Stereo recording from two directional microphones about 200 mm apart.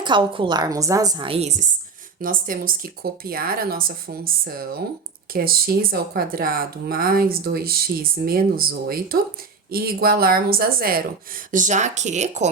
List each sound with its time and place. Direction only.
0.0 s a woman's voice: 25° right (ahead or behind)
2.2 s speech: 45° right (ahead or behind)